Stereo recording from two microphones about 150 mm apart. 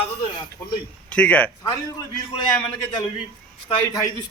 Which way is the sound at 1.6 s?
25° left (ahead or behind).